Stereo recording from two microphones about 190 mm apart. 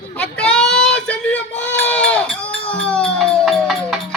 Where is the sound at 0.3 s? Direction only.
5° left (ahead or behind).